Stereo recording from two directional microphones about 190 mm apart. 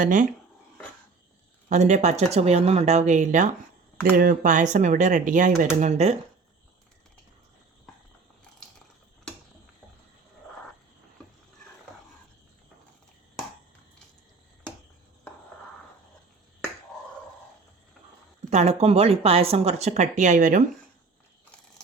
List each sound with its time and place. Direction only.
0.0 s speech: 40° right (ahead or behind)
1.7 s speech: 40° right (ahead or behind)
18.5 s speech: 35° right (ahead or behind)